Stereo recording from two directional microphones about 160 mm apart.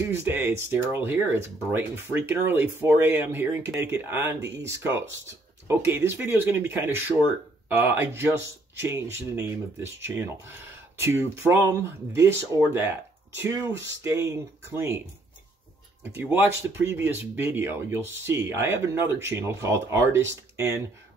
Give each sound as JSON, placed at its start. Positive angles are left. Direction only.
{"t": 0.0, "sound": "speech", "side_deg": -15}
{"t": 16.0, "sound": "speech", "side_deg": -15}